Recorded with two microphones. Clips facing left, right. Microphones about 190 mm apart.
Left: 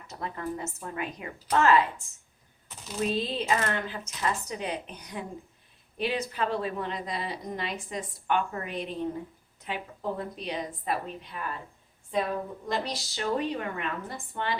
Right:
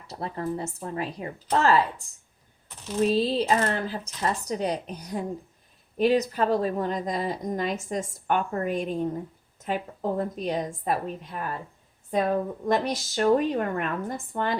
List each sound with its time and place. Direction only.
0.1 s speech: 35° right (ahead or behind)
3.0 s a woman's voice: 35° right (ahead or behind)